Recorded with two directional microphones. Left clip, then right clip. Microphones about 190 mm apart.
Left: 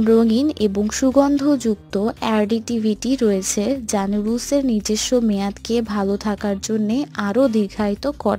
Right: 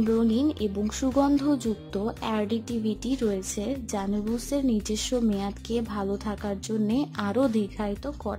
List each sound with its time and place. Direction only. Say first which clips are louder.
0.0 s speech: left 9 dB; 30° left (ahead or behind)